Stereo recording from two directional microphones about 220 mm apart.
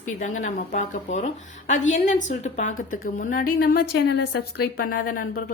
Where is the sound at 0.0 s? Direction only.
35° left (ahead or behind).